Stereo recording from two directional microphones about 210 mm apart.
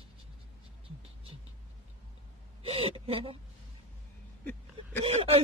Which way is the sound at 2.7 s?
25° right (ahead or behind).